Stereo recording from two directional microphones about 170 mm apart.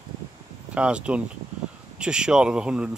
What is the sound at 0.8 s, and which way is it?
Speech, 5° right (ahead or behind).